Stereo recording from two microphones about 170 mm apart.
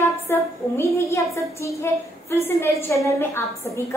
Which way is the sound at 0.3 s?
15° left (ahead or behind).